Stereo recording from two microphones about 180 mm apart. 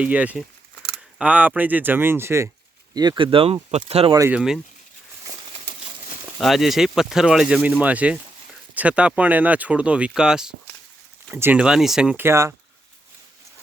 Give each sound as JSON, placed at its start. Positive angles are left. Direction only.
{"t": 0.0, "sound": "speech", "side_deg": -5}
{"t": 4.1, "sound": "speech", "side_deg": -15}
{"t": 4.4, "sound": "speech", "side_deg": -5}
{"t": 6.4, "sound": "speech", "side_deg": 0}